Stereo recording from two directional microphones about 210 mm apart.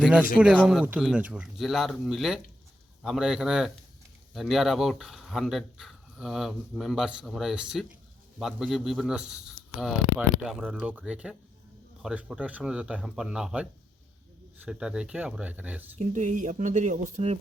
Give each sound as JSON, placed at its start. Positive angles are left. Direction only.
{"t": 0.0, "sound": "speech", "side_deg": -5}
{"t": 16.0, "sound": "speech", "side_deg": -35}